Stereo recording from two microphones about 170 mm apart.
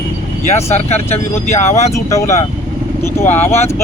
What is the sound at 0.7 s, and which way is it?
Speech, 40° left (ahead or behind).